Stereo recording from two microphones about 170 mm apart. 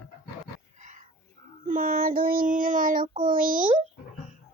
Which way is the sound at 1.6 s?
50° right (ahead or behind).